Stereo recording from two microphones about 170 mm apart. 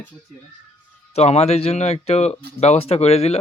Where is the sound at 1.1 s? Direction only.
40° left (ahead or behind).